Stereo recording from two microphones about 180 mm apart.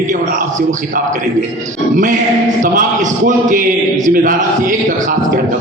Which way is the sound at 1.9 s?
45° right (ahead or behind).